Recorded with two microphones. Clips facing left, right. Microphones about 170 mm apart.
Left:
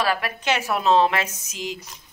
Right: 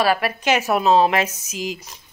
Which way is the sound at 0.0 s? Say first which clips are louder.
Right 5 dB; 10° right (ahead or behind).